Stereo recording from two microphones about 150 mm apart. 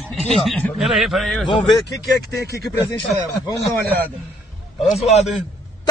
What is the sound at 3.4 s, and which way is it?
Speech, centre (ahead or behind).